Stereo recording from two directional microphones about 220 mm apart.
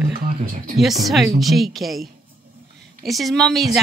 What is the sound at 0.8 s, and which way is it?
A woman's voice, centre (ahead or behind).